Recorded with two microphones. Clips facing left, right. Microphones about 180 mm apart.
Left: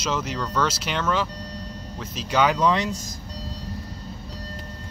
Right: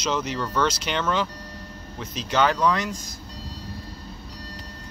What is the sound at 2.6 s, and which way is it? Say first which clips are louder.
Speech: left 1 dB; 20° left (ahead or behind).